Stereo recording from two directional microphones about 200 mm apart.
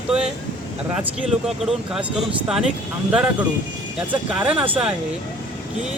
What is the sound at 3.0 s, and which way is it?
Speech, 5° right (ahead or behind).